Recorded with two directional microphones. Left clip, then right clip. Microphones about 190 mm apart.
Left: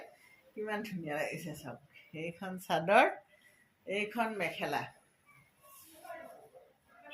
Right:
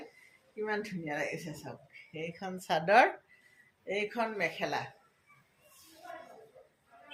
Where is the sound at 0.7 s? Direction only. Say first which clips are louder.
Right 3 dB; 15° right (ahead or behind).